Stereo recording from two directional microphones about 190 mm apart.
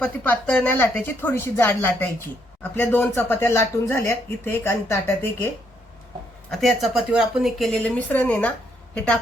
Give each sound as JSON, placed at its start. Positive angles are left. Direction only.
{"t": 0.0, "sound": "speech", "side_deg": 10}
{"t": 6.5, "sound": "a woman's voice", "side_deg": 0}